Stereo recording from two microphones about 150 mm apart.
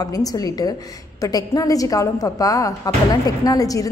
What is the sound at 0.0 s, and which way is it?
A woman's voice, 25° left (ahead or behind).